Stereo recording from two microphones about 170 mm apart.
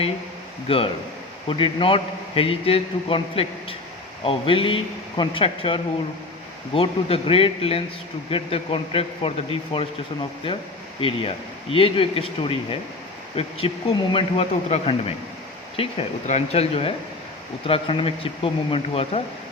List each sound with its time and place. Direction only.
0.7 s a man's voice: 35° left (ahead or behind)
11.0 s a man's voice: 30° left (ahead or behind)